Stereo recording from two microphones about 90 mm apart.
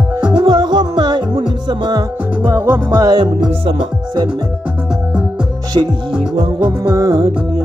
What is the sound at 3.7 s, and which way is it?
Music, 65° right (ahead or behind).